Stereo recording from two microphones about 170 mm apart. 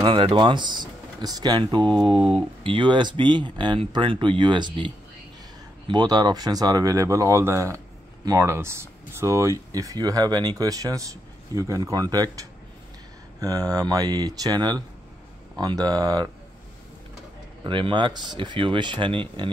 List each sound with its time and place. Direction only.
0.0 s speech: 30° right (ahead or behind)
17.6 s speech: 30° right (ahead or behind)